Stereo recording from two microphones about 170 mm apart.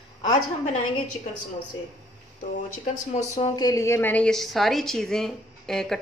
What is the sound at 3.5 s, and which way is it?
A woman's voice, 20° left (ahead or behind).